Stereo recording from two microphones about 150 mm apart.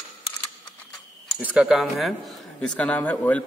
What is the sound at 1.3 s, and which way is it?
A man's voice, 5° right (ahead or behind).